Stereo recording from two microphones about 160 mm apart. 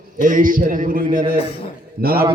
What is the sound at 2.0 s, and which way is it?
Speech, 70° right (ahead or behind).